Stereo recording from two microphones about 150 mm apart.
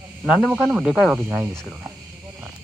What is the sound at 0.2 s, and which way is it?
Speech, 5° right (ahead or behind).